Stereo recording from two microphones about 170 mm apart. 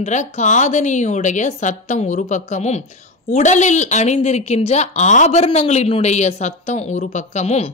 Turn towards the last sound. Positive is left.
turn(degrees=40)  # may be behind; listen again after turning